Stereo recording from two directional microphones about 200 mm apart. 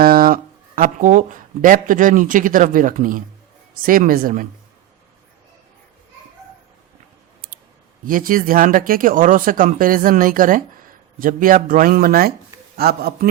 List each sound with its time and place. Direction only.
0.0 s a sound: 45° right (ahead or behind)
0.8 s speech: 40° right (ahead or behind)
8.0 s speech: 45° right (ahead or behind)